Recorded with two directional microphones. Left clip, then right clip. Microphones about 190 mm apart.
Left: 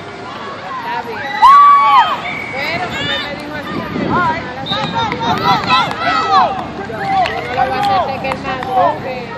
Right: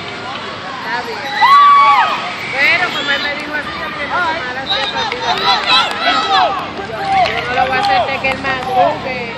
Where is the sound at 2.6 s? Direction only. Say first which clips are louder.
Right 8 dB; 15° left (ahead or behind).